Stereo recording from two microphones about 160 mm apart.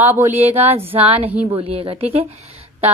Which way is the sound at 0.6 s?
40° right (ahead or behind).